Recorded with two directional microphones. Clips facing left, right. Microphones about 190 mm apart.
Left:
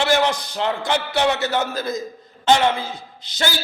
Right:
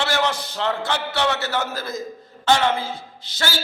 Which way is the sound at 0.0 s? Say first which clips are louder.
Left 4 dB; 15° left (ahead or behind).